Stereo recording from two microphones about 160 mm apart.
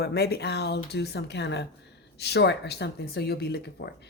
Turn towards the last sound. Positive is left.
turn(degrees=90)